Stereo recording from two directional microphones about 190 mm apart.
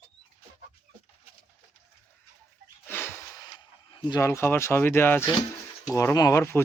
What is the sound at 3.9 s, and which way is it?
Speech, 20° left (ahead or behind).